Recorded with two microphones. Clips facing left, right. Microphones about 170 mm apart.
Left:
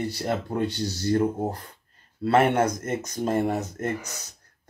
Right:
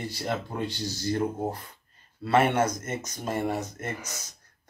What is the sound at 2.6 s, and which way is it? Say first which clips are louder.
Speech: left 4 dB; 55° left (ahead or behind).